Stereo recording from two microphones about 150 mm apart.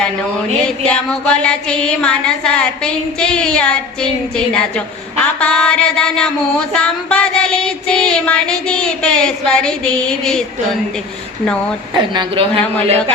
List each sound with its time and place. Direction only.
0.9 s child singing: 5° left (ahead or behind)
5.2 s child singing: 5° left (ahead or behind)
11.9 s a woman's voice: 30° right (ahead or behind)